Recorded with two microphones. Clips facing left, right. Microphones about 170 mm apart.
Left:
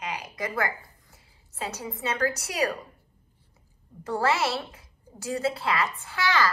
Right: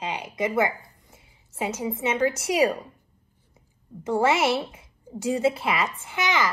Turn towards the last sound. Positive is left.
turn(degrees=-20)  # may be behind; listen again after turning